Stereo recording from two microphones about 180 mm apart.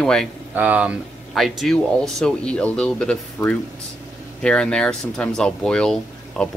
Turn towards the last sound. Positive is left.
turn(degrees=5)  # may be behind; listen again after turning